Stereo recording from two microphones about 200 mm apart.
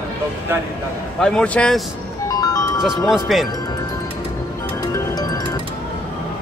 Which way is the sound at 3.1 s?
Centre (ahead or behind).